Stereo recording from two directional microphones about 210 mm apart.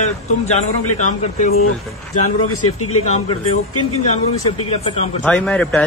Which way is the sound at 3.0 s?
30° left (ahead or behind).